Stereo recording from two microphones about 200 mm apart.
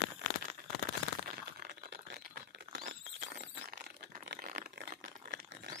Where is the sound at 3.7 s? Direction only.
40° right (ahead or behind).